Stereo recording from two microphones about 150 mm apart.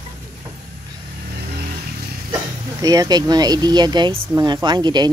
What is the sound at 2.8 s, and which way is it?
Speech, 25° right (ahead or behind).